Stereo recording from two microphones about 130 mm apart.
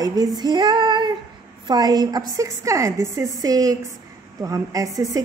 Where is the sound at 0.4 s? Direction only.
35° right (ahead or behind).